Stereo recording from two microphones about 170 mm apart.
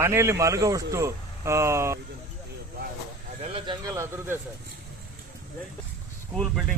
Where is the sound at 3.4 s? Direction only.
30° right (ahead or behind).